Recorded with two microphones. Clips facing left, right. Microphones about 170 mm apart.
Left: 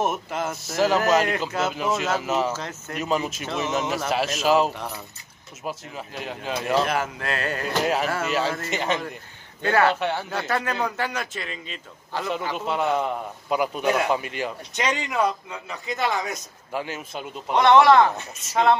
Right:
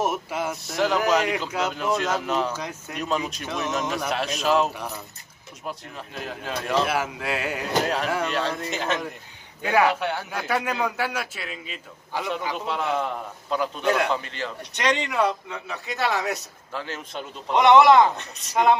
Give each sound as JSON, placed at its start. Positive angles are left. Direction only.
{"t": 0.0, "sound": "a man's voice", "side_deg": -10}
{"t": 0.6, "sound": "a man's voice", "side_deg": 0}
{"t": 2.5, "sound": "a man's voice", "side_deg": -15}
{"t": 2.9, "sound": "a man's voice", "side_deg": 5}
{"t": 7.8, "sound": "a man's voice", "side_deg": 5}
{"t": 9.6, "sound": "a man's voice", "side_deg": -10}
{"t": 16.7, "sound": "speech", "side_deg": 10}
{"t": 17.6, "sound": "a man's voice", "side_deg": -15}